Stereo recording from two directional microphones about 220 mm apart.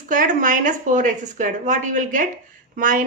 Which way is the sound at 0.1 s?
35° right (ahead or behind).